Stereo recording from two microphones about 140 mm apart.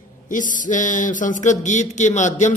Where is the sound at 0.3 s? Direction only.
70° left (ahead or behind).